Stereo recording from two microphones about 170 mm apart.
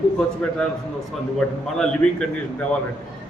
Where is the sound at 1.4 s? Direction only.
5° left (ahead or behind).